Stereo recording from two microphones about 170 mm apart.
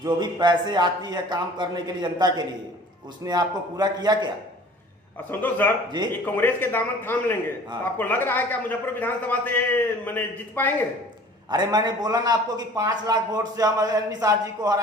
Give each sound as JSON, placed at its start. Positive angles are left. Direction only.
{"t": 0.0, "sound": "a man's voice", "side_deg": -25}
{"t": 5.3, "sound": "a man's voice", "side_deg": 10}
{"t": 11.5, "sound": "a man's voice", "side_deg": -25}